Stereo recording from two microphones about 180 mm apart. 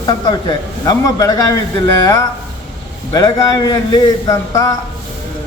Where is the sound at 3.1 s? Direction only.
20° left (ahead or behind).